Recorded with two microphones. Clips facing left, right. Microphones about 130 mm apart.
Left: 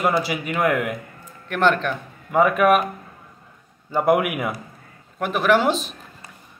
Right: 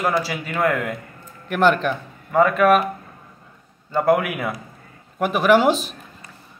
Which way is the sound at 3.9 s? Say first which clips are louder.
Even; 15° left (ahead or behind).